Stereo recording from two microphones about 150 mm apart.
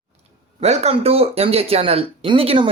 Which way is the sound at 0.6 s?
45° right (ahead or behind).